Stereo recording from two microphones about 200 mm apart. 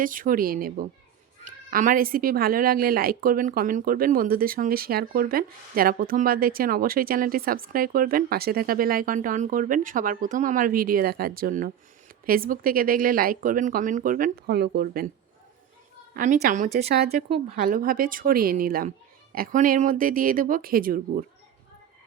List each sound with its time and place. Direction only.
0.0 s speech: 45° right (ahead or behind)
16.1 s a woman's voice: 40° right (ahead or behind)